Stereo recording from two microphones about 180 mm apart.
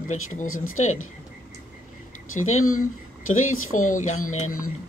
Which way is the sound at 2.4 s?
40° left (ahead or behind).